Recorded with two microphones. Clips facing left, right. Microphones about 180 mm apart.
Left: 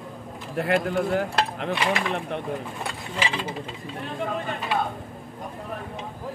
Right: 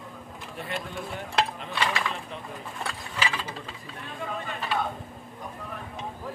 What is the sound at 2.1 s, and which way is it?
Speech, 80° left.